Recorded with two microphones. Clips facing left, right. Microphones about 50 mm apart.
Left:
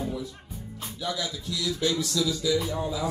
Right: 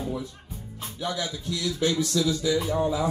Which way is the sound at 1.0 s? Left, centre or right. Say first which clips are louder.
Right 2 dB; right.